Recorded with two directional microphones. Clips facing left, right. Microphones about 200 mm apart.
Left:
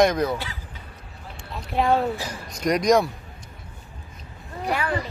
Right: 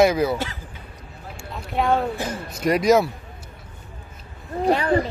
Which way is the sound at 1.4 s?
5° right (ahead or behind).